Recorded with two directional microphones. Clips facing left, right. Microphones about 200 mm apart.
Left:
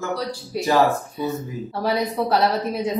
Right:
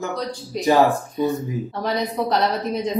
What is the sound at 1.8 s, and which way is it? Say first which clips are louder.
A woman's voice: left 2 dB; 10° left (ahead or behind).